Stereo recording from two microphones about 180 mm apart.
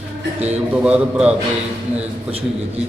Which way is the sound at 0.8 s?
5° right (ahead or behind).